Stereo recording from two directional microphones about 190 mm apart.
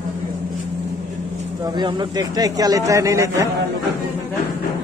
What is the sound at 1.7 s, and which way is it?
A man's voice, 25° right (ahead or behind).